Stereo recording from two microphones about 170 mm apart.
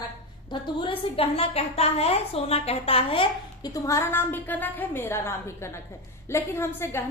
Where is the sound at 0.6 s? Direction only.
30° left (ahead or behind).